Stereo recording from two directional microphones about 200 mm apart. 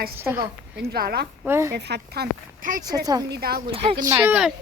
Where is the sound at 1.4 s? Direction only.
10° right (ahead or behind).